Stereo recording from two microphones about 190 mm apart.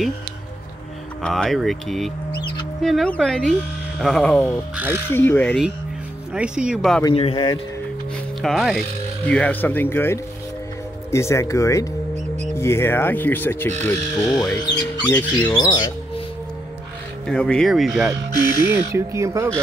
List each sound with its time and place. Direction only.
1.2 s speech: centre (ahead or behind)
4.7 s speech: 10° right (ahead or behind)
5.1 s speech: 10° left (ahead or behind)
6.3 s speech: 5° right (ahead or behind)
7.2 s speech: 25° left (ahead or behind)
8.4 s speech: centre (ahead or behind)
15.5 s speech: 20° left (ahead or behind)
17.3 s speech: 5° left (ahead or behind)
18.4 s speech: 15° right (ahead or behind)